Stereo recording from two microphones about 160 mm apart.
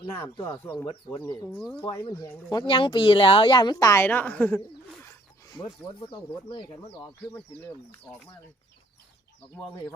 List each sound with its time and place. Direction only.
0.2 s speech: 15° left (ahead or behind)
0.9 s speech: 35° left (ahead or behind)
1.5 s speech: 5° left (ahead or behind)
1.8 s speech: 20° left (ahead or behind)
5.0 s speech: 25° left (ahead or behind)